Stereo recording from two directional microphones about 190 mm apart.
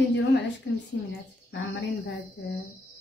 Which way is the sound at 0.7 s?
70° left (ahead or behind).